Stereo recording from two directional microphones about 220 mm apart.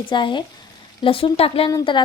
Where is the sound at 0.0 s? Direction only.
20° left (ahead or behind).